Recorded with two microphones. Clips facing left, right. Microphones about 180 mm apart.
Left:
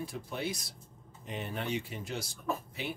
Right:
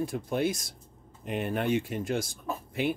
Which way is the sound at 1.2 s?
60° right (ahead or behind).